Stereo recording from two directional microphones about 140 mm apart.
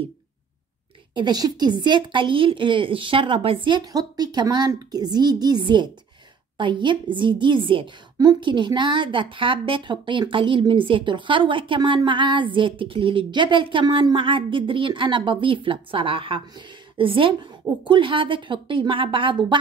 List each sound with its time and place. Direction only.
1.1 s a woman's voice: 30° right (ahead or behind)